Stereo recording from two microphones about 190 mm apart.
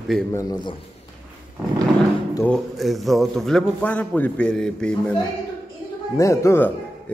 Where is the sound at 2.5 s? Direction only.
Centre (ahead or behind).